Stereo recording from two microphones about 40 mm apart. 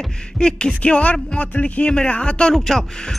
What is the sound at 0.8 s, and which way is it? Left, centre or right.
Music, left.